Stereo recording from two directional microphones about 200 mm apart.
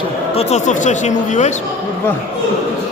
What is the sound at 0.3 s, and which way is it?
Speech, 35° left (ahead or behind).